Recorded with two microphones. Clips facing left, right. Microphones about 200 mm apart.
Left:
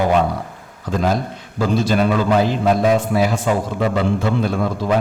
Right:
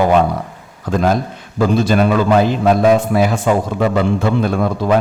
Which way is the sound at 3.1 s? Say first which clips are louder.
Right 3 dB; 60° right (ahead or behind).